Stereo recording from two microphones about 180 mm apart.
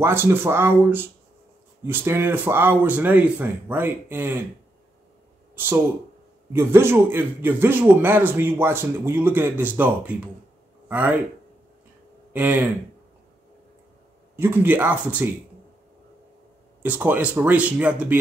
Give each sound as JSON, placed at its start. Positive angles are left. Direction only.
{"t": 0.0, "sound": "a man's voice", "side_deg": -15}
{"t": 6.5, "sound": "a man's voice", "side_deg": -15}
{"t": 12.3, "sound": "speech", "side_deg": -10}
{"t": 14.3, "sound": "a man's voice", "side_deg": -10}
{"t": 16.8, "sound": "a man's voice", "side_deg": -10}